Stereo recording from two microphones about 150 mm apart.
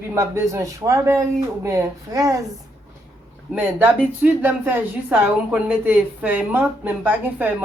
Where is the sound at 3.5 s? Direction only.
10° right (ahead or behind).